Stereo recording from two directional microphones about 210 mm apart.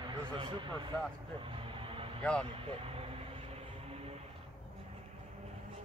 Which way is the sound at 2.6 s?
25° right (ahead or behind).